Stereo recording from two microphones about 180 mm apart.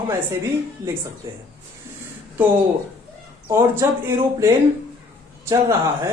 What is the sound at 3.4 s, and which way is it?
Speech, 15° right (ahead or behind).